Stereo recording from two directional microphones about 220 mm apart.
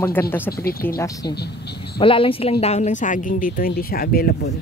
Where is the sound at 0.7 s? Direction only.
45° left (ahead or behind).